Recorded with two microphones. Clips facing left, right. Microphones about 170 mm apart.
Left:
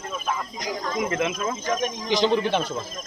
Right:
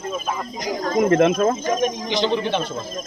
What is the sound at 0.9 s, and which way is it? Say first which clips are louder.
Speech: right 10 dB; 45° right (ahead or behind).